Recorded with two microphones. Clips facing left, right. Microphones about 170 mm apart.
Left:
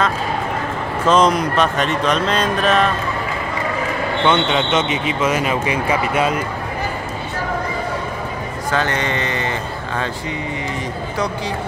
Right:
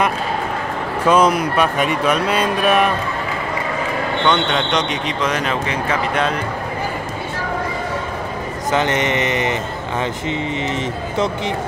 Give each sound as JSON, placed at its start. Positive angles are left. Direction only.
{"t": 1.0, "sound": "speech", "side_deg": -10}
{"t": 4.3, "sound": "speech", "side_deg": 5}
{"t": 8.7, "sound": "speech", "side_deg": -20}